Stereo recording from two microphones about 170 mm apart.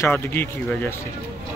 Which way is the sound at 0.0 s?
10° left (ahead or behind).